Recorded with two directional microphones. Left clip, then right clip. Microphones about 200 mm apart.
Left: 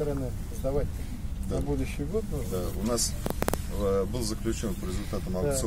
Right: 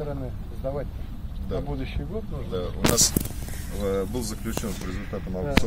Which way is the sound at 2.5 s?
20° left (ahead or behind).